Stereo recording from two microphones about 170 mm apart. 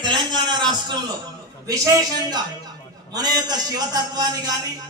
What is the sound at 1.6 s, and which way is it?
A man's voice, 20° right (ahead or behind).